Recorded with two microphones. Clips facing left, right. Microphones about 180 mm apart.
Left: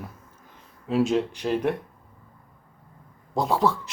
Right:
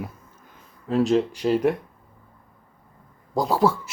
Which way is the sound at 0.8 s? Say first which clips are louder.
Right 2 dB; centre (ahead or behind).